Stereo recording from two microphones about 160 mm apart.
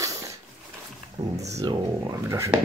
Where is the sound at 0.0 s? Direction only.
20° right (ahead or behind).